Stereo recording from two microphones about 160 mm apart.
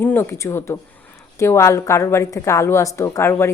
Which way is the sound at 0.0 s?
15° left (ahead or behind).